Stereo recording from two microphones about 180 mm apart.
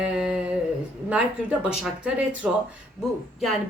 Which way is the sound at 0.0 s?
5° right (ahead or behind).